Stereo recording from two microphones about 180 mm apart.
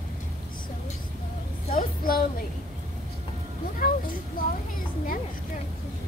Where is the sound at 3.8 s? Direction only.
50° left (ahead or behind).